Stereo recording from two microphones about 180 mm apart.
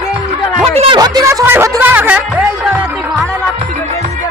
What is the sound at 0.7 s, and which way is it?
Speech, 35° right (ahead or behind).